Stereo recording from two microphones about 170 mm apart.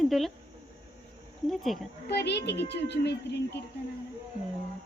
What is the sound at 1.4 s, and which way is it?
Speech, centre (ahead or behind).